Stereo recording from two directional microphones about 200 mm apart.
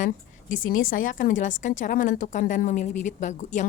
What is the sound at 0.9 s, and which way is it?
A woman's voice, 40° left (ahead or behind).